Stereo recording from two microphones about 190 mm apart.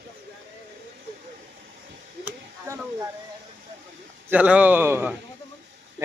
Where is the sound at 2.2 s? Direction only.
15° right (ahead or behind).